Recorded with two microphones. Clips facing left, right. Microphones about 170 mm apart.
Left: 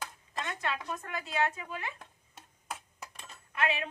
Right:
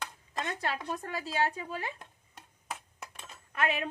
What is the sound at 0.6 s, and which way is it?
Speech, 35° right (ahead or behind).